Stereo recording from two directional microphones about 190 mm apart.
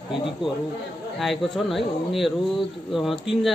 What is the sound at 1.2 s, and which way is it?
Speech, centre (ahead or behind).